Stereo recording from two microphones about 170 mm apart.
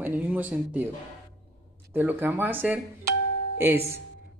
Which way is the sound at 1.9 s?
10° right (ahead or behind).